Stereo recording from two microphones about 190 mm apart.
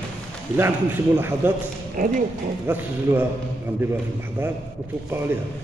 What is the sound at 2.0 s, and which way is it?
Speech, 45° right (ahead or behind).